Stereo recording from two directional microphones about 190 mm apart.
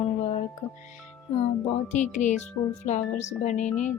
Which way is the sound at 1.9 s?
40° left (ahead or behind).